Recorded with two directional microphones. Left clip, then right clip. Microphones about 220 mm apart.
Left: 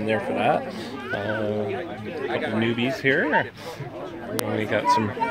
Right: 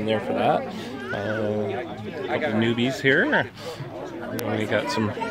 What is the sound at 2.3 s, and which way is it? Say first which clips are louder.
Speech: right 2 dB; 35° right (ahead or behind).